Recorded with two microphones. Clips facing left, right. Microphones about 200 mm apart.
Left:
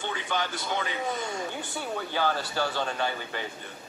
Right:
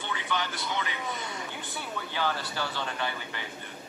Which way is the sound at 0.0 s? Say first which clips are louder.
Left 2 dB; 45° left (ahead or behind).